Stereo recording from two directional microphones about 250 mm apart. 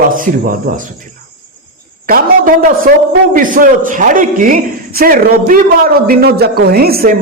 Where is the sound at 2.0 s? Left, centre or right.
Right.